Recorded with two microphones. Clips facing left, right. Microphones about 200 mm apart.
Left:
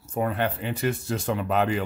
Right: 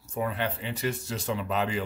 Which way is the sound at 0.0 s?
55° left (ahead or behind).